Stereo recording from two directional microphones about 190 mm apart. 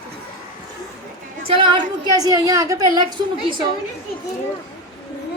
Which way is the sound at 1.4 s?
30° right (ahead or behind).